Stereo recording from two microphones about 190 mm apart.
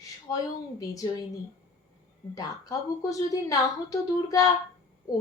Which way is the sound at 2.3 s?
20° left (ahead or behind).